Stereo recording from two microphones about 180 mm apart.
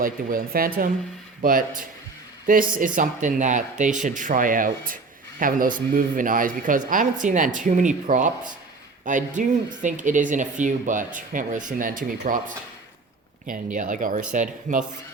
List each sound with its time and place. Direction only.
0.0 s speech: 50° right (ahead or behind)
13.5 s speech: 45° right (ahead or behind)